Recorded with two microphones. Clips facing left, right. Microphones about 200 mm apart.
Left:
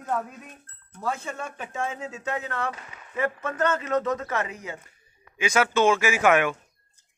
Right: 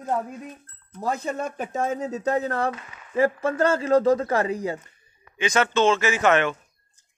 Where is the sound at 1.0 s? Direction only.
40° right (ahead or behind).